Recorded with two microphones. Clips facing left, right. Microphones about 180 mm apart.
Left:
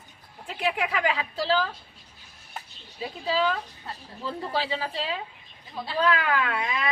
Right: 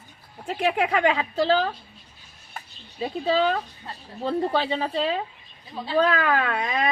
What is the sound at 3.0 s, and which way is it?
Speech, 45° right (ahead or behind).